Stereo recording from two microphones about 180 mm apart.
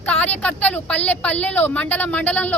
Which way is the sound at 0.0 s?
10° left (ahead or behind).